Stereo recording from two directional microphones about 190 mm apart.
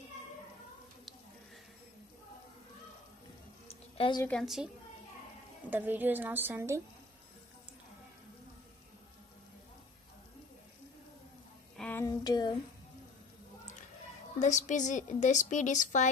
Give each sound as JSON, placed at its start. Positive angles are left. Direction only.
{"t": 3.6, "sound": "a sound", "side_deg": 30}
{"t": 4.3, "sound": "a woman's voice", "side_deg": 0}
{"t": 5.7, "sound": "a woman's voice", "side_deg": -10}
{"t": 11.7, "sound": "a sound", "side_deg": 10}
{"t": 12.2, "sound": "speech", "side_deg": 20}
{"t": 14.4, "sound": "a woman's voice", "side_deg": 40}